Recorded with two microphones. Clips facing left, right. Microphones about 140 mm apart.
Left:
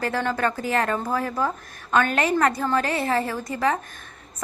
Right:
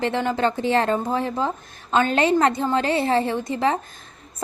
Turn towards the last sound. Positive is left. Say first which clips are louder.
# right 2 dB
turn(degrees=-25)  # may be behind; listen again after turning